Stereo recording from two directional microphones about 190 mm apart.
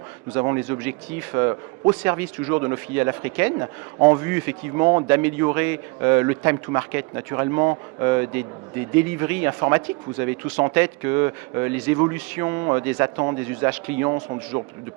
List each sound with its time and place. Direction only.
0.3 s speech: 15° right (ahead or behind)
4.8 s a man's voice: 25° right (ahead or behind)
5.0 s a man's voice: 10° right (ahead or behind)